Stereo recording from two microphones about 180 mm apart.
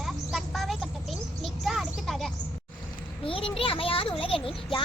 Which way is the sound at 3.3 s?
30° left (ahead or behind).